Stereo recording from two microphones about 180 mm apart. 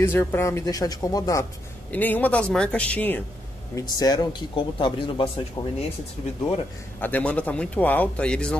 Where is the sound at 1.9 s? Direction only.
10° left (ahead or behind).